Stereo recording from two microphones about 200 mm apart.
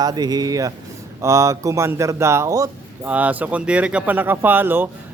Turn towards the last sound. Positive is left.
turn(degrees=-10)  # may be behind; listen again after turning